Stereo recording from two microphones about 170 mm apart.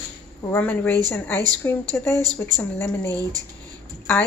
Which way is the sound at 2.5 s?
10° left (ahead or behind).